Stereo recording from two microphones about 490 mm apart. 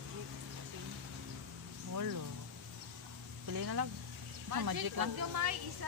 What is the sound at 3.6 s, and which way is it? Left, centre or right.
Speech, right.